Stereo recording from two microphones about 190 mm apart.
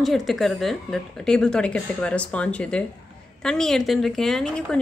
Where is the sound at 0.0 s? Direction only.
Centre (ahead or behind).